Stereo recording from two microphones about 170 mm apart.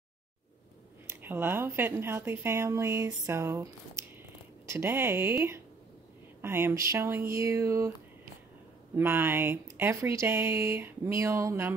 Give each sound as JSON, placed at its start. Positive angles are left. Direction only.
{"t": 1.2, "sound": "speech", "side_deg": -10}
{"t": 4.6, "sound": "speech", "side_deg": -15}
{"t": 8.9, "sound": "speech", "side_deg": -15}